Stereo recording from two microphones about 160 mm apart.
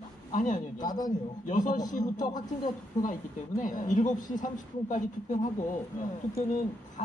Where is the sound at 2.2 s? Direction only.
25° left (ahead or behind).